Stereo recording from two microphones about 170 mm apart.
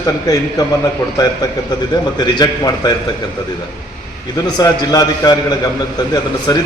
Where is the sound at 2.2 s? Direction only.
25° left (ahead or behind).